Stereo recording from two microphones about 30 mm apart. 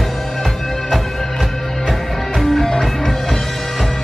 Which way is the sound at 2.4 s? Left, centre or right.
Centre.